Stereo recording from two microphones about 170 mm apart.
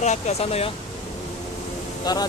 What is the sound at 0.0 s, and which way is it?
Speech, 40° left (ahead or behind).